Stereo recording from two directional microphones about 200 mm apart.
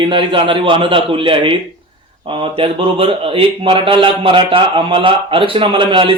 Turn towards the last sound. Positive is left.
turn(degrees=-25)  # may be behind; listen again after turning